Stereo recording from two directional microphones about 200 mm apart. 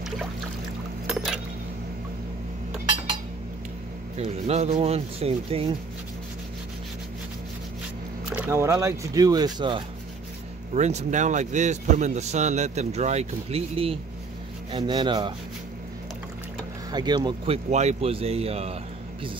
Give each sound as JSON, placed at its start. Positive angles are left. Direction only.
{"t": 1.0, "sound": "chink", "side_deg": -5}
{"t": 4.2, "sound": "a man's voice", "side_deg": -30}
{"t": 8.3, "sound": "speech", "side_deg": -10}
{"t": 10.7, "sound": "a man's voice", "side_deg": -35}
{"t": 16.9, "sound": "speech", "side_deg": -20}
{"t": 17.6, "sound": "a man's voice", "side_deg": -35}